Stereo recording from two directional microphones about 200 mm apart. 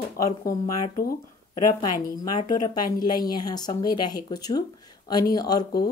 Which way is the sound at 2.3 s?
20° left (ahead or behind).